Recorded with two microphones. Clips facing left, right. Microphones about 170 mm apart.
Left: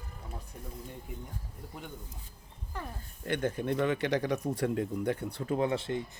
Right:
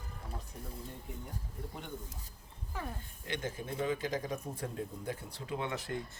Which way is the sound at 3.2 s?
55° left (ahead or behind).